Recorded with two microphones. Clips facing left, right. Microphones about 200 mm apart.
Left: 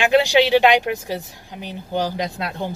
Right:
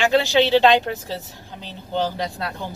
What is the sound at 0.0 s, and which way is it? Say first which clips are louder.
A woman's voice: left 2 dB; 15° left (ahead or behind).